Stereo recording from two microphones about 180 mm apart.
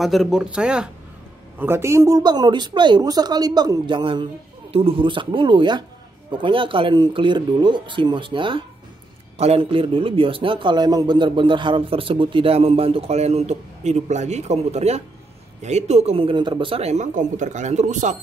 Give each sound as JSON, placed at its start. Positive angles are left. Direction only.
{"t": 0.0, "sound": "a man's voice", "side_deg": 0}